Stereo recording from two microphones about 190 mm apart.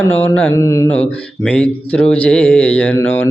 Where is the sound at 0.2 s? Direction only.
10° left (ahead or behind).